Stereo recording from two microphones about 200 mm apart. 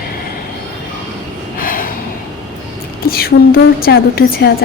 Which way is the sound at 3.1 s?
50° left (ahead or behind).